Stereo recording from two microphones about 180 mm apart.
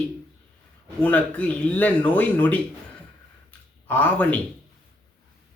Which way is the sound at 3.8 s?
10° left (ahead or behind).